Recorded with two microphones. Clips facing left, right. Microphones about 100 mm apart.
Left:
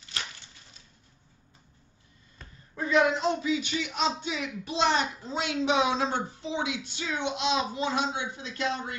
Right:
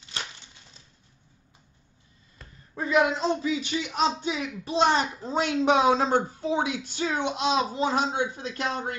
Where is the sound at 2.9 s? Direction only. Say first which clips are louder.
Right 1 dB; 20° right (ahead or behind).